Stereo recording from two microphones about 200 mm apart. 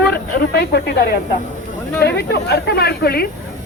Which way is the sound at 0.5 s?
50° left (ahead or behind).